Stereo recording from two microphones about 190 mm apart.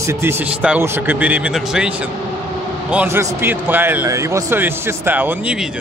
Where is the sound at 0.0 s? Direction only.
15° right (ahead or behind).